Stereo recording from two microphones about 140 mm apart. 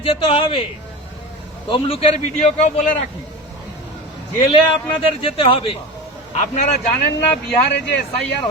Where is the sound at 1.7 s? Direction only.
40° left (ahead or behind).